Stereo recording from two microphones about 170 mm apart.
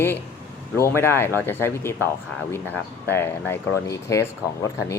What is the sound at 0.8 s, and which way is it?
Speech, 15° left (ahead or behind).